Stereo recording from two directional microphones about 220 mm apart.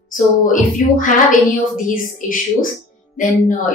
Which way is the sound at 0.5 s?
35° left (ahead or behind).